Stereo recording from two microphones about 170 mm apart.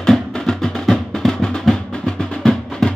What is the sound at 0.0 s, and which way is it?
Music, 5° left (ahead or behind).